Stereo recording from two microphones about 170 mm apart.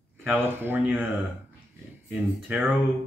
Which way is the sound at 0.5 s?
10° right (ahead or behind).